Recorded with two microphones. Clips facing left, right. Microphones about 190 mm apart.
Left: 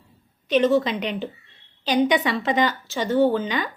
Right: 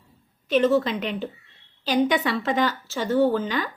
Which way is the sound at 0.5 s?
5° right (ahead or behind).